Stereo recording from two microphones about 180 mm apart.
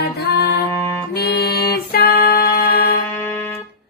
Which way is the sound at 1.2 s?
60° left (ahead or behind).